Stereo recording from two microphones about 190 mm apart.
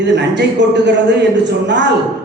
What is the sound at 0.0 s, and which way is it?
A man's voice, 65° right (ahead or behind).